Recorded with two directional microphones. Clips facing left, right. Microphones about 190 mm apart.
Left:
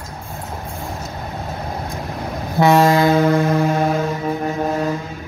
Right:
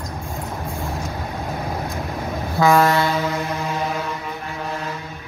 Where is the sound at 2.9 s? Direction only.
50° left (ahead or behind).